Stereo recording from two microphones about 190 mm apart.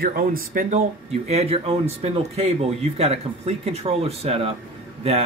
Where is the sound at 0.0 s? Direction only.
50° right (ahead or behind).